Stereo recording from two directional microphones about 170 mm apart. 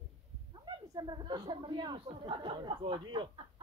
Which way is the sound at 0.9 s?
25° right (ahead or behind).